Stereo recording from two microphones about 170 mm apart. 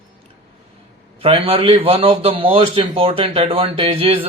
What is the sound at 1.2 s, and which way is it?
A man's voice, 35° right (ahead or behind).